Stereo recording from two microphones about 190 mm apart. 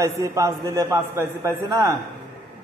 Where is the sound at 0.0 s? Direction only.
15° right (ahead or behind).